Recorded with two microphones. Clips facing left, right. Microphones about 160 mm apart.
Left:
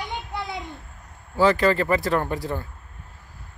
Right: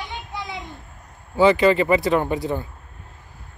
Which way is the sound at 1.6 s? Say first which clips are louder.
Right 4 dB; 15° right (ahead or behind).